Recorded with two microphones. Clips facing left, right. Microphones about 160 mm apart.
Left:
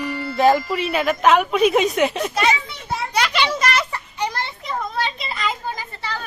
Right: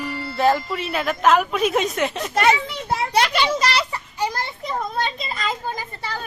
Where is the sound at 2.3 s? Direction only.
55° right (ahead or behind).